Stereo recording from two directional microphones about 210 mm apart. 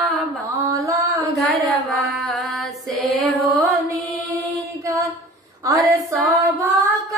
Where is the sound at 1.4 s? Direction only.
Centre (ahead or behind).